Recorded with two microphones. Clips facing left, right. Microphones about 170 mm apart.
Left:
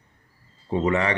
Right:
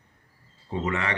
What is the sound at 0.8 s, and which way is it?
Speech, 35° left (ahead or behind).